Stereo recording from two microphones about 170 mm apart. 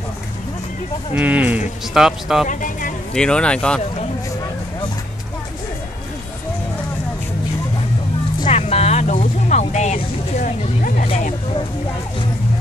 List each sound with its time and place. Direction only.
1.1 s speech: 10° right (ahead or behind)
2.4 s speech: 50° left (ahead or behind)
3.2 s speech: 5° left (ahead or behind)
8.5 s music: 40° left (ahead or behind)
11.1 s a sound: 40° left (ahead or behind)